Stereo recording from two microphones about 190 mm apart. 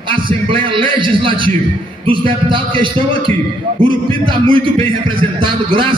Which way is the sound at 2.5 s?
25° right (ahead or behind).